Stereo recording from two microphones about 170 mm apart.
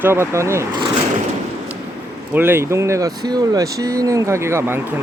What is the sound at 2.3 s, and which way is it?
Speech, 15° right (ahead or behind).